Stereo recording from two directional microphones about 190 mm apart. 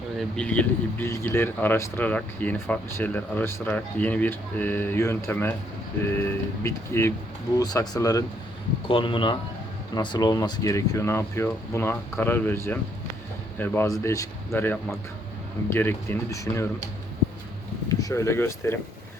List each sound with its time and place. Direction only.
0.2 s speech: 5° left (ahead or behind)
17.8 s speech: 15° left (ahead or behind)